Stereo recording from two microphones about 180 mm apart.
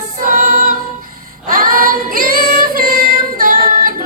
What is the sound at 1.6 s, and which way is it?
Female singing, 50° right (ahead or behind).